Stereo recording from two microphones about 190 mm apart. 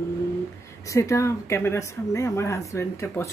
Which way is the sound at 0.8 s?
15° left (ahead or behind).